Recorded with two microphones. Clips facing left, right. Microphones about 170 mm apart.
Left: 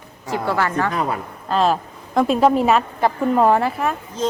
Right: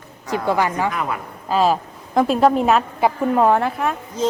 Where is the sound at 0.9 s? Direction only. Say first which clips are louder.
Left 2 dB; 35° left (ahead or behind).